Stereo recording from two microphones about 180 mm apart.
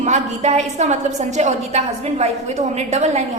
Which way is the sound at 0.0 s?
40° right (ahead or behind).